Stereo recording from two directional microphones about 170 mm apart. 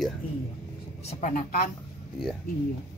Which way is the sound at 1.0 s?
50° left (ahead or behind).